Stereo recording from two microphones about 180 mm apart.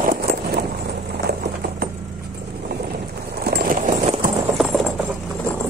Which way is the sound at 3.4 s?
55° right (ahead or behind).